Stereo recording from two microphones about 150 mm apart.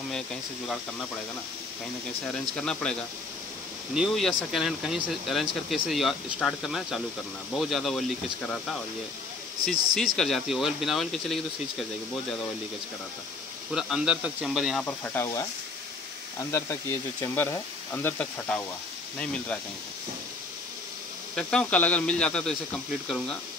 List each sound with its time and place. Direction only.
0.1 s speech: 5° left (ahead or behind)
2.5 s speech: 5° left (ahead or behind)
9.9 s speech: 5° left (ahead or behind)
13.7 s speech: 5° right (ahead or behind)
14.9 s speech: 15° left (ahead or behind)
21.4 s speech: 5° left (ahead or behind)